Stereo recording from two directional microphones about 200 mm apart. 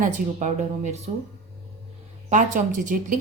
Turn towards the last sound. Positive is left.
turn(degrees=-40)  # may be behind; listen again after turning